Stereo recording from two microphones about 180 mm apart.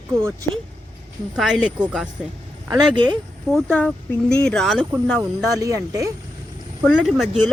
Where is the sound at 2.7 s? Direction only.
25° right (ahead or behind).